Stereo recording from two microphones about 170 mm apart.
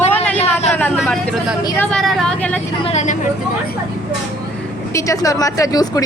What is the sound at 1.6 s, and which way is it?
Speech, 15° left (ahead or behind).